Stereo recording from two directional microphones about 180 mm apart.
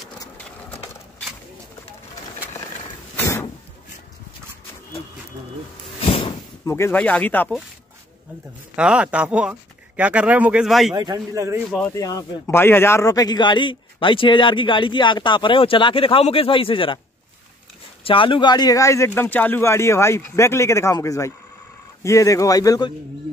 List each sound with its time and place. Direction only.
5.9 s a sound: 30° left (ahead or behind)
6.6 s speech: 15° left (ahead or behind)
8.7 s speech: 5° right (ahead or behind)
11.0 s speech: 20° right (ahead or behind)
11.9 s a man's voice: 20° left (ahead or behind)
18.0 s a man's voice: 30° left (ahead or behind)